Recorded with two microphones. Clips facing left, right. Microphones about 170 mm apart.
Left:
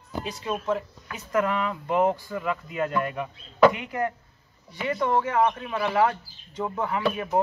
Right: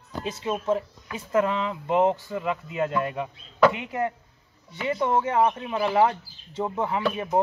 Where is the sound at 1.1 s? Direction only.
25° right (ahead or behind).